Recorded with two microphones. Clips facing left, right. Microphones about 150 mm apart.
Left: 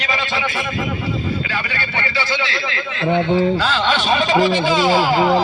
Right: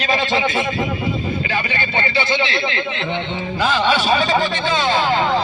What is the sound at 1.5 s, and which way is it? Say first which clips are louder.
Speech: right 3 dB; 20° right (ahead or behind).